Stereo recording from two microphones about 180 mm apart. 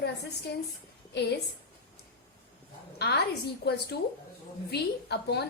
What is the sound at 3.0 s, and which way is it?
A woman's voice, 70° left (ahead or behind).